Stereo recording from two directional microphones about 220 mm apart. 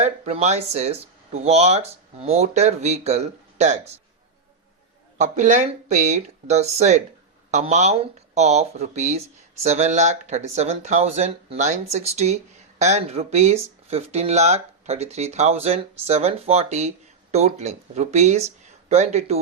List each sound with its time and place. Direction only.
0.0 s speech: 30° right (ahead or behind)
5.1 s speech: 35° right (ahead or behind)
18.6 s a sound: 30° right (ahead or behind)